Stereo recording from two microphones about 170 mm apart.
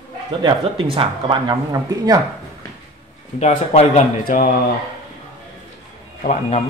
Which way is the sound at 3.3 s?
40° left (ahead or behind).